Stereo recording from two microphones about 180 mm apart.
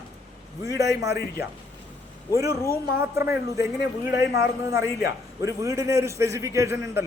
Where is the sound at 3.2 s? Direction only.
15° right (ahead or behind).